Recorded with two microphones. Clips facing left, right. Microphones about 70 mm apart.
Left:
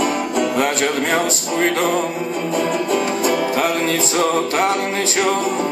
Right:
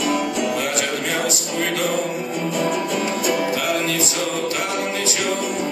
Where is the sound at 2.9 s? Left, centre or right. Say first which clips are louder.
Left 3 dB; left.